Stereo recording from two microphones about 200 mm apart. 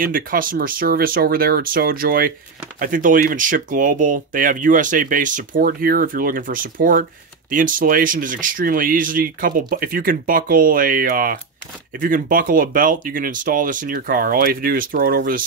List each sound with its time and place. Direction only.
0.0 s speech: 45° right (ahead or behind)